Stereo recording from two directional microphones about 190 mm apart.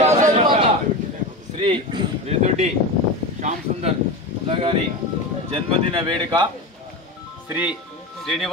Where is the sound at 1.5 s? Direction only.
30° right (ahead or behind).